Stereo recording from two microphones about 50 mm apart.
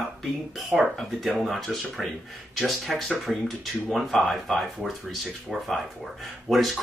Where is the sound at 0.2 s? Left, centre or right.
Centre.